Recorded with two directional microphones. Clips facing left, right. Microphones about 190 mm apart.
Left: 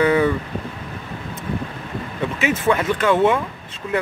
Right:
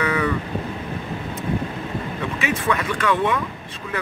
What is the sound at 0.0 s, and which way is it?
Vehicle, 30° left (ahead or behind).